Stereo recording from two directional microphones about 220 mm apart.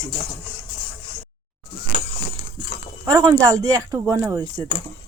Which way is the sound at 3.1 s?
15° right (ahead or behind).